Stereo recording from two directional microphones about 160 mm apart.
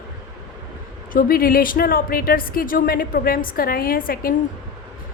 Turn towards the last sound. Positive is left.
turn(degrees=65)  # may be behind; listen again after turning